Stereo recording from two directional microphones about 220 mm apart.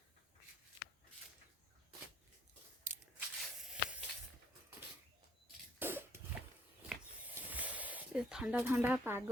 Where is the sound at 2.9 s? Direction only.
35° right (ahead or behind).